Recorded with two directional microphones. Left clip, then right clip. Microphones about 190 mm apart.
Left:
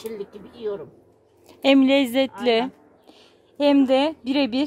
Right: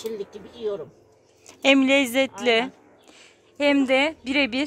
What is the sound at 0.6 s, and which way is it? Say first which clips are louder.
Speech: even; 5° right (ahead or behind).